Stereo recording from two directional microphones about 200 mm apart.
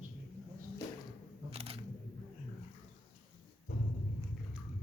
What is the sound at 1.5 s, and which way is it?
Camera, 30° right (ahead or behind).